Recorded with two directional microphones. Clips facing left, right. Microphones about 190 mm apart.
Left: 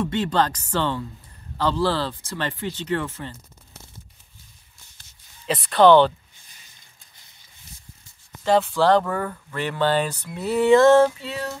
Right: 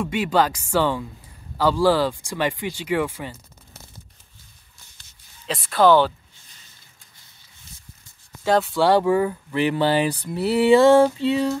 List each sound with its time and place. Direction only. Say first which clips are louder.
0.0 s speech: right 1 dB; 10° right (ahead or behind)
5.5 s speech: left 2 dB; centre (ahead or behind)
8.5 s speech: even; 5° right (ahead or behind)
11.1 s music: right 10 dB; 25° right (ahead or behind)